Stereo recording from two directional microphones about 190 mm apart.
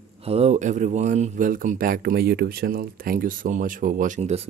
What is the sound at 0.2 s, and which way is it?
Speech, 30° right (ahead or behind).